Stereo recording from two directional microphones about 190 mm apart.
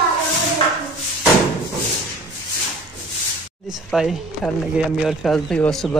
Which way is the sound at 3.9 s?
5° left (ahead or behind).